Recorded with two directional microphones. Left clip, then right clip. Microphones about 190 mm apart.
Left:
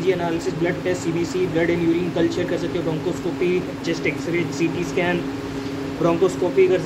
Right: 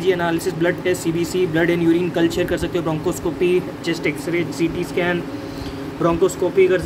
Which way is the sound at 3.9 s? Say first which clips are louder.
Left 1 dB; 20° right (ahead or behind).